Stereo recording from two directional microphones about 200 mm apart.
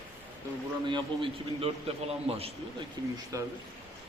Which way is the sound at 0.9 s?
25° right (ahead or behind).